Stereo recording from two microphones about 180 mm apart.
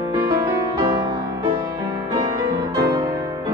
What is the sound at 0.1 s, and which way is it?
Music, 20° right (ahead or behind).